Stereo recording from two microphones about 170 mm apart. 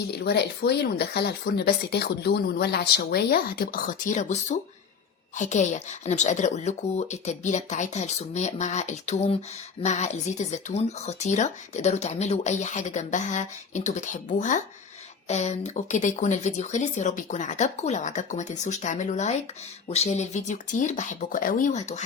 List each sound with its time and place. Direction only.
0.2 s speech: 75° left (ahead or behind); by 22.0 s 40° left (ahead or behind)